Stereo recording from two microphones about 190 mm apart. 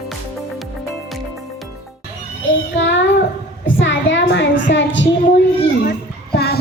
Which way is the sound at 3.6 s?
75° left (ahead or behind).